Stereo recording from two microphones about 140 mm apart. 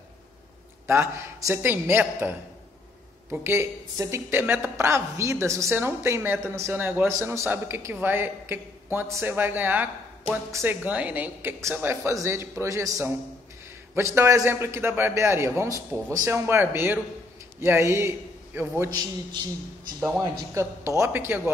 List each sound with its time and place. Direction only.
0.8 s a woman's voice: 20° right (ahead or behind)
20.2 s a woman's voice: 20° right (ahead or behind)